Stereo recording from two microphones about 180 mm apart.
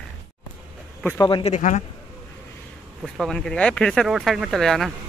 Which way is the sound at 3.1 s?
5° left (ahead or behind).